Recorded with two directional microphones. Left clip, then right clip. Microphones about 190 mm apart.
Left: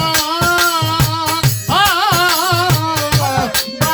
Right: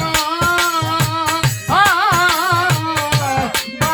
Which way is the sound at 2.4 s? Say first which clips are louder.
Left 1 dB; 5° left (ahead or behind).